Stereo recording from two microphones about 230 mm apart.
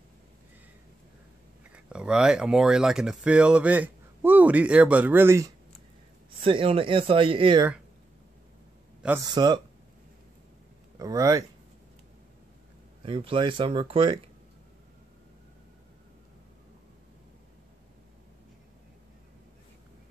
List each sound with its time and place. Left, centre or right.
1.6 s speech: centre
6.4 s speech: right
9.3 s speech: centre
11.0 s speech: centre
13.0 s speech: right